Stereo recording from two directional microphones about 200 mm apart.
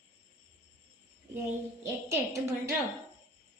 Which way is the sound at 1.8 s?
15° right (ahead or behind).